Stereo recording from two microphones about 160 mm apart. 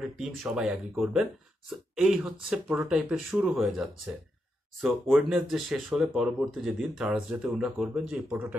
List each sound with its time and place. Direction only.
0.2 s speech: 5° right (ahead or behind)
5.3 s speech: centre (ahead or behind)